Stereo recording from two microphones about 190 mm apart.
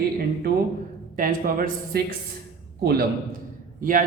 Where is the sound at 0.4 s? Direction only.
55° right (ahead or behind).